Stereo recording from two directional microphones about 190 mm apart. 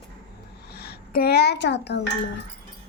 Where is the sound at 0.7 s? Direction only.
55° left (ahead or behind).